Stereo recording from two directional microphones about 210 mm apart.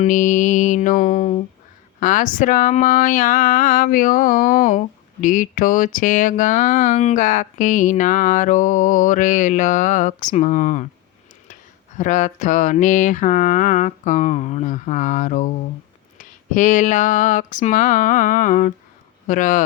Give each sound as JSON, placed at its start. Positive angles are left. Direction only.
{"t": 0.0, "sound": "speech", "side_deg": 35}
{"t": 11.9, "sound": "speech", "side_deg": 35}